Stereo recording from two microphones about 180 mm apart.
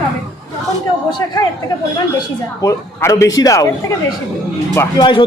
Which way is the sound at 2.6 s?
15° left (ahead or behind).